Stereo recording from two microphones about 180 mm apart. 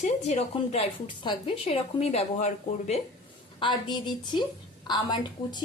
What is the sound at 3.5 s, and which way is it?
A woman's voice, 25° left (ahead or behind).